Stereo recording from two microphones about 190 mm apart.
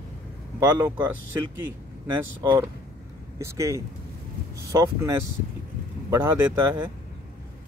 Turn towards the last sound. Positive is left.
turn(degrees=-15)  # may be behind; listen again after turning